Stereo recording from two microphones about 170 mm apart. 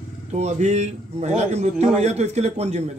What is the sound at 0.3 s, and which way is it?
A man's voice, 40° right (ahead or behind).